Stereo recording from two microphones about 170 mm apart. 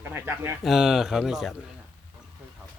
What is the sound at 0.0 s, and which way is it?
Speech, 15° right (ahead or behind).